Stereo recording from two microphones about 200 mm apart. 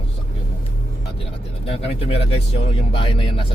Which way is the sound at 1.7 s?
30° left (ahead or behind).